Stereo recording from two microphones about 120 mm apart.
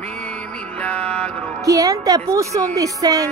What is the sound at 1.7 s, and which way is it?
A woman's voice, 30° right (ahead or behind).